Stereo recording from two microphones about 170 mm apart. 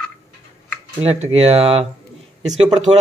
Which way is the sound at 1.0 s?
35° right (ahead or behind).